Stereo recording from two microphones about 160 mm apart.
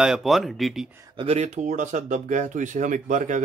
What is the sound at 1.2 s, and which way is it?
Speech, 40° right (ahead or behind).